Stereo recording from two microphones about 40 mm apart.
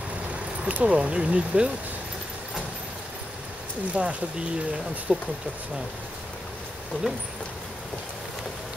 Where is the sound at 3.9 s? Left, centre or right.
Right.